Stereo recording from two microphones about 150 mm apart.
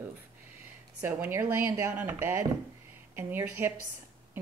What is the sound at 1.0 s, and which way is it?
A woman's voice, 15° right (ahead or behind).